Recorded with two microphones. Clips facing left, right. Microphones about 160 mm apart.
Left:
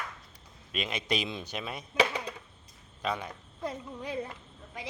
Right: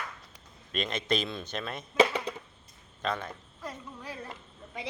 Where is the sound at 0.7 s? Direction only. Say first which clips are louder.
Right 2 dB; 5° left (ahead or behind).